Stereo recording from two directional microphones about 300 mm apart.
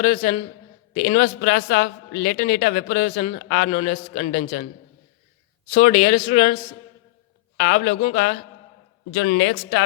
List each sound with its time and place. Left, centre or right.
0.0 s a man's voice: left
5.7 s a man's voice: left